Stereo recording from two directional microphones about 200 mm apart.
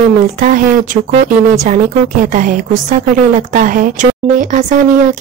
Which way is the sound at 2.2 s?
40° right (ahead or behind).